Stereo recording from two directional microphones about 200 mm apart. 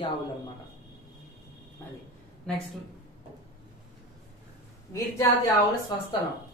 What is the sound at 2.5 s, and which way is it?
Speech, 5° left (ahead or behind).